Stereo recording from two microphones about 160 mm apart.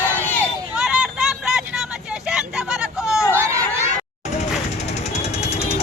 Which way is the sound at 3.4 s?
20° right (ahead or behind).